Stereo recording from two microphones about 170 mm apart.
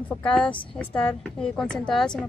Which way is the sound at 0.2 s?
5° left (ahead or behind).